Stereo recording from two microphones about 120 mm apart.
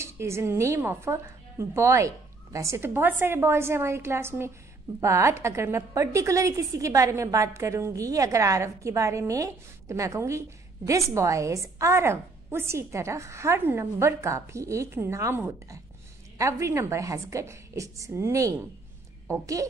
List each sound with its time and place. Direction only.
0.0 s a woman's voice: 20° right (ahead or behind)